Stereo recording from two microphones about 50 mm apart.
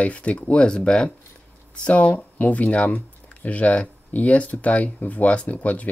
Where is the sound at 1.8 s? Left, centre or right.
Left.